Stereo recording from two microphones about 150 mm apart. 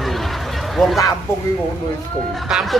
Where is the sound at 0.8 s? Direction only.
Centre (ahead or behind).